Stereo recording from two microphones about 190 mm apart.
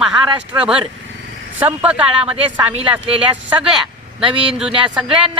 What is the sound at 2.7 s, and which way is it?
Speech, 30° right (ahead or behind).